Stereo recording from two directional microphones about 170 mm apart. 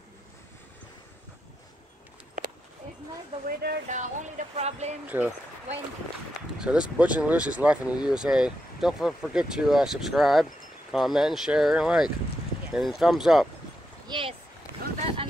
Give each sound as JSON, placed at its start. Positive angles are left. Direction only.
{"t": 3.4, "sound": "speech", "side_deg": -50}
{"t": 5.0, "sound": "speech", "side_deg": -10}
{"t": 6.6, "sound": "speech", "side_deg": -5}
{"t": 14.0, "sound": "speech", "side_deg": -30}
{"t": 15.0, "sound": "boat", "side_deg": -35}